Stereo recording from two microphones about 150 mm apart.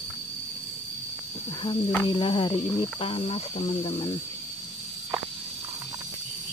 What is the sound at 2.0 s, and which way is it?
Speech, 35° left (ahead or behind).